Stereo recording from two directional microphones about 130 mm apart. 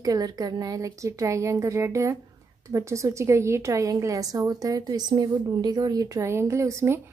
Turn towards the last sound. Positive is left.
turn(degrees=-20)  # may be behind; listen again after turning